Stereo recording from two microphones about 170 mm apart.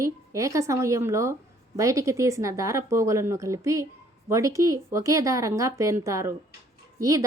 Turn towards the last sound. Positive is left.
turn(degrees=-20)  # may be behind; listen again after turning